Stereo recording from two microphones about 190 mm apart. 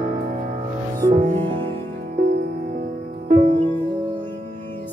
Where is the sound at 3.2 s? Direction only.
25° right (ahead or behind).